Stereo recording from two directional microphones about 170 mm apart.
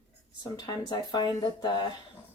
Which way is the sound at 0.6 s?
25° left (ahead or behind).